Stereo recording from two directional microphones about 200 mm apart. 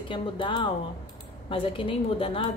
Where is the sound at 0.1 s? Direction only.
25° left (ahead or behind).